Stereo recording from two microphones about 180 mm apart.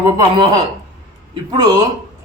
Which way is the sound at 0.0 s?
20° right (ahead or behind).